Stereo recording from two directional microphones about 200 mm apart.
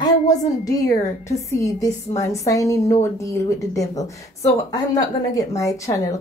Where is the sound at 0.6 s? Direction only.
15° left (ahead or behind).